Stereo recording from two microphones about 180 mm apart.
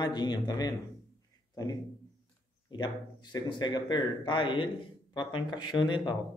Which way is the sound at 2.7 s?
25° left (ahead or behind).